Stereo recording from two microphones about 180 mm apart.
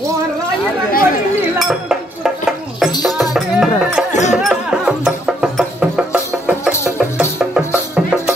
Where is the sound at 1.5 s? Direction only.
Centre (ahead or behind).